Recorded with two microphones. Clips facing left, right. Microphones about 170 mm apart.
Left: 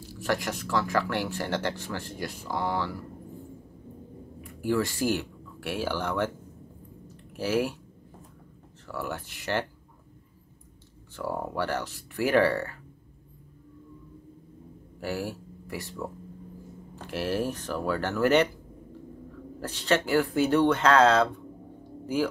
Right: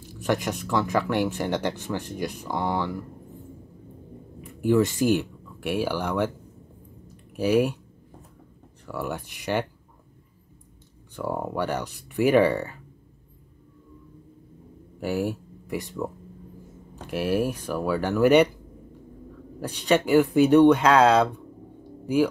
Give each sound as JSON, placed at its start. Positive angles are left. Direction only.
{"t": 0.1, "sound": "speech", "side_deg": -20}
{"t": 4.4, "sound": "speech", "side_deg": -20}
{"t": 7.3, "sound": "speech", "side_deg": -15}
{"t": 8.8, "sound": "speech", "side_deg": -15}
{"t": 11.1, "sound": "speech", "side_deg": -15}
{"t": 15.0, "sound": "speech", "side_deg": -15}
{"t": 16.9, "sound": "a sound", "side_deg": -15}
{"t": 17.5, "sound": "speech", "side_deg": -10}
{"t": 19.6, "sound": "speech", "side_deg": -15}